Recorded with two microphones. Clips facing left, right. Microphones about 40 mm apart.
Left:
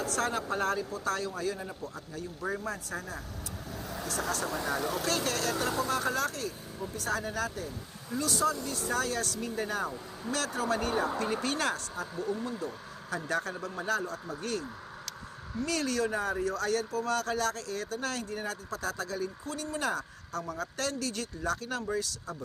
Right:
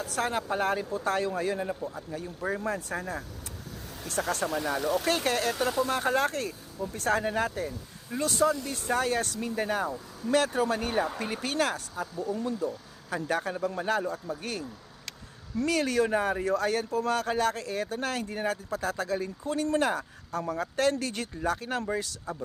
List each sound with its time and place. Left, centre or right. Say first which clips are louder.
0.3 s speech: right 2 dB; centre
0.8 s speech: right 4 dB; right
1.8 s speech: right 4 dB; centre; by 4.4 s right
4.6 s speech: right 4 dB; right
5.8 s speech: right 6 dB; right; by 12.0 s centre
12.2 s speech: right 1 dB; centre
13.1 s speech: right 3 dB; centre
15.6 s speech: right 4 dB; centre
19.8 s speech: right 4 dB; centre